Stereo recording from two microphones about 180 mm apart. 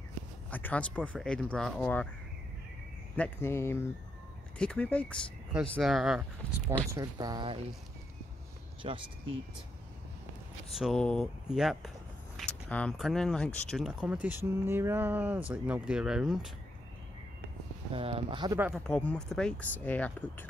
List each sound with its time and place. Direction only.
0.5 s speech: 10° left (ahead or behind)
3.2 s speech: 15° left (ahead or behind)
6.4 s speech: 30° left (ahead or behind)
6.8 s speech: 20° right (ahead or behind)
8.8 s speech: 30° right (ahead or behind)
10.7 s speech: centre (ahead or behind)
17.9 s speech: 30° right (ahead or behind)
18.9 s speech: 5° left (ahead or behind)